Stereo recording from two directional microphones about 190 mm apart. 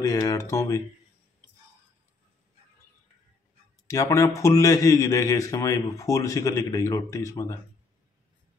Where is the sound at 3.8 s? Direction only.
15° left (ahead or behind).